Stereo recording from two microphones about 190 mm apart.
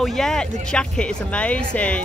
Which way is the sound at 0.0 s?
Centre (ahead or behind).